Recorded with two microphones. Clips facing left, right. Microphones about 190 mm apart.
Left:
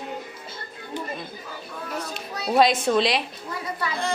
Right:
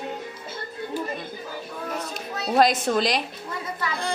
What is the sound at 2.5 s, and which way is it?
Speech, centre (ahead or behind).